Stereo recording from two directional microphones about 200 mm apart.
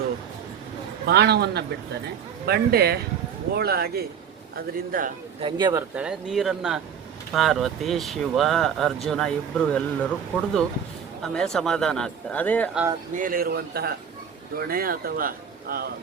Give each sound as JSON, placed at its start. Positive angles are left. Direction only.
{"t": 1.0, "sound": "a man's voice", "side_deg": -55}
{"t": 5.4, "sound": "speech", "side_deg": -25}
{"t": 6.0, "sound": "speech", "side_deg": -5}
{"t": 13.1, "sound": "speech", "side_deg": -45}